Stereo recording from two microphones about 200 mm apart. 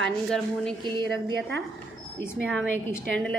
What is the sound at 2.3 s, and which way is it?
A woman's voice, centre (ahead or behind).